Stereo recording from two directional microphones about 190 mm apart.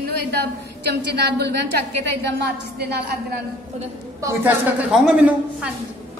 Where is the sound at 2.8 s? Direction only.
60° right (ahead or behind).